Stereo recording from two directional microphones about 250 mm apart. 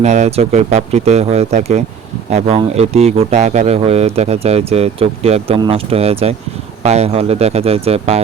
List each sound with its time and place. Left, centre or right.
0.0 s speech: right